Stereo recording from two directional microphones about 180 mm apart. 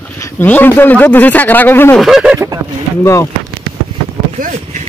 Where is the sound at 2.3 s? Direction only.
15° right (ahead or behind).